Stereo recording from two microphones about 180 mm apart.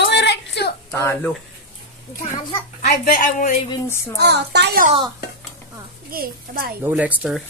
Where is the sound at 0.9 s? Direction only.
15° left (ahead or behind).